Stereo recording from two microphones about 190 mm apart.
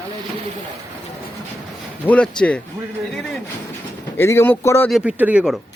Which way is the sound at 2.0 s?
5° left (ahead or behind).